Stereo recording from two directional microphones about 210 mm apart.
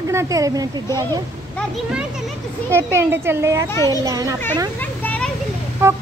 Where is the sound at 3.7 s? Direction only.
15° left (ahead or behind).